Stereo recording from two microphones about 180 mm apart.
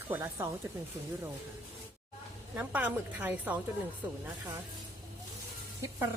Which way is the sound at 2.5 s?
10° right (ahead or behind).